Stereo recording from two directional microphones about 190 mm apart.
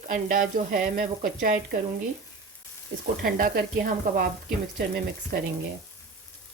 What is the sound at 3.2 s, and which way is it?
Frying, 50° right (ahead or behind).